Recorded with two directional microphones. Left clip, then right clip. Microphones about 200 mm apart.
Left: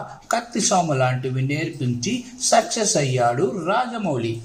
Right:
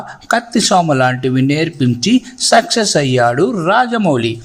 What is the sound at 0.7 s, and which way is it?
Speech, 45° right (ahead or behind).